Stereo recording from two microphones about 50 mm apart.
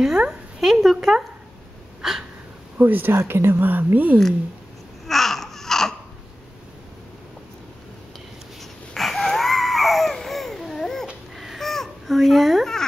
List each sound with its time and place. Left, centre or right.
0.3 s speech: centre
2.0 s a sound: centre
2.8 s speech: right
3.1 s speech: right
5.0 s babbling: centre
8.9 s a sound: centre